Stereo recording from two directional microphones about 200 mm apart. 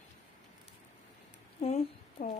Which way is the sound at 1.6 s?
30° left (ahead or behind).